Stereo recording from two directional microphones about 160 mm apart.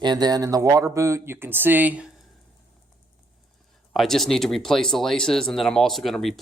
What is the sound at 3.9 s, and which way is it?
Speech, centre (ahead or behind).